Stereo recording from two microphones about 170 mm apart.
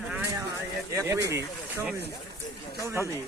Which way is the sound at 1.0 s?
20° right (ahead or behind).